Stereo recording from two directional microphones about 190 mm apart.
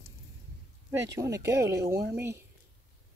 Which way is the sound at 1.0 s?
15° right (ahead or behind).